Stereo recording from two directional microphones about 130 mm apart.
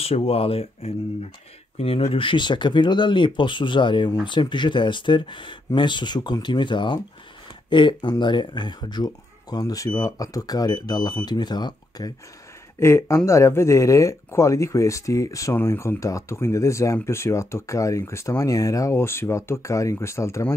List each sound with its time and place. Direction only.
0.0 s speech: 50° left (ahead or behind); by 12.1 s 35° left (ahead or behind)
12.7 s speech: 20° left (ahead or behind)